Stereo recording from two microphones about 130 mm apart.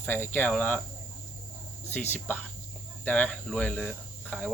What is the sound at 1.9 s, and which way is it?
Speech, 15° left (ahead or behind).